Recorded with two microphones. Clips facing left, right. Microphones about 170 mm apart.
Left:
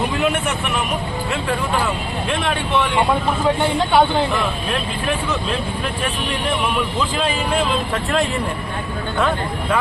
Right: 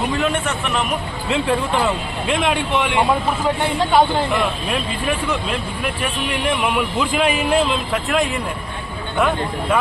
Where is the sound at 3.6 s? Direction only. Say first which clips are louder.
Right 1 dB; centre (ahead or behind).